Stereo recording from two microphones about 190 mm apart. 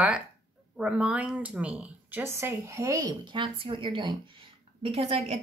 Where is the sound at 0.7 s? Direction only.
5° right (ahead or behind).